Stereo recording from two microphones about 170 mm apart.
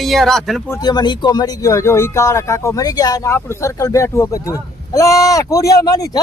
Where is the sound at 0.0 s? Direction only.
Centre (ahead or behind).